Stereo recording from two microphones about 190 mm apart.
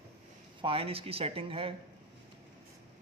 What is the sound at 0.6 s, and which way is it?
Speech, 30° right (ahead or behind).